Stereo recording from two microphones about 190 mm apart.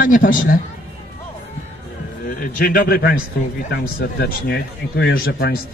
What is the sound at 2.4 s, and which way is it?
A man's voice, 50° left (ahead or behind).